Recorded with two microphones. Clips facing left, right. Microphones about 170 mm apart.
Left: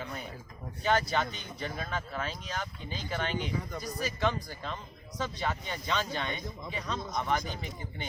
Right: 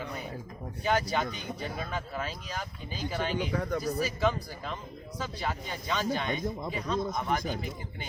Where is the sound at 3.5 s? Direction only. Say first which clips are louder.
Right 6 dB; 75° right (ahead or behind).